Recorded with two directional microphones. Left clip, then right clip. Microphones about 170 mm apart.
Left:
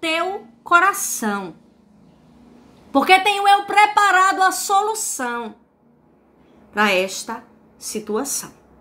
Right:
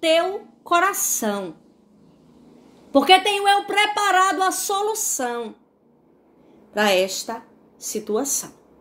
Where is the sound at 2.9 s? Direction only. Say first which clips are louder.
Left 1 dB; 20° left (ahead or behind).